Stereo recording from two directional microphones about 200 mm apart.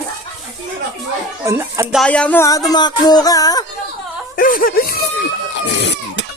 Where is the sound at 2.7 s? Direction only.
20° left (ahead or behind).